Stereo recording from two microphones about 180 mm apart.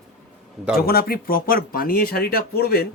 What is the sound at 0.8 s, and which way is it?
Speech, 55° left (ahead or behind).